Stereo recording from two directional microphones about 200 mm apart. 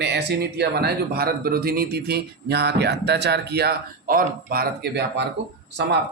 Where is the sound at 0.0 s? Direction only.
55° right (ahead or behind).